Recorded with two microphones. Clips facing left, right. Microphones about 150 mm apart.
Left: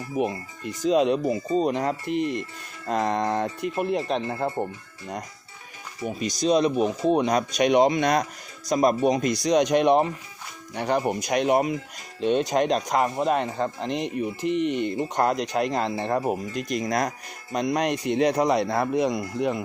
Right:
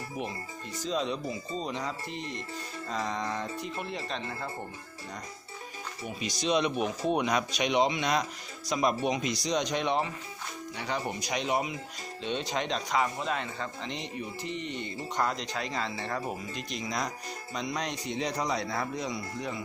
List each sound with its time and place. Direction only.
0.2 s speech: 60° left (ahead or behind)
6.1 s speech: 40° left (ahead or behind); by 19.6 s 55° left (ahead or behind)